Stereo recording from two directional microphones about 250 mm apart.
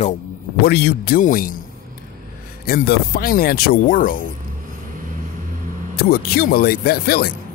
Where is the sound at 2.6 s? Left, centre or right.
Left.